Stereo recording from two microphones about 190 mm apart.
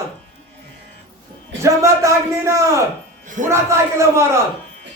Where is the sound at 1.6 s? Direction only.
15° right (ahead or behind).